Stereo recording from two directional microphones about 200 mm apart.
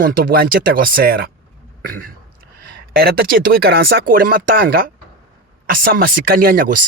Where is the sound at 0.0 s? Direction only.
45° right (ahead or behind).